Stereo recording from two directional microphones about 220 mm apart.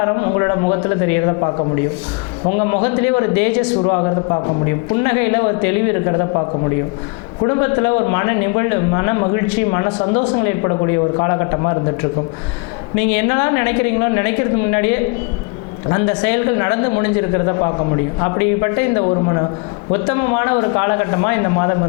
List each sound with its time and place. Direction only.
0.0 s a man's voice: 25° left (ahead or behind)
7.4 s a man's voice: 20° left (ahead or behind)
13.0 s a woman's voice: 10° left (ahead or behind)
15.9 s a man's voice: 20° left (ahead or behind)